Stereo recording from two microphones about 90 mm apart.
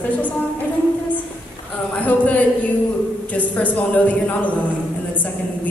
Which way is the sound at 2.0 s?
15° left (ahead or behind).